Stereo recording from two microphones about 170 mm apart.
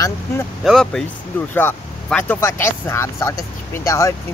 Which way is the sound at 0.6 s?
Centre (ahead or behind).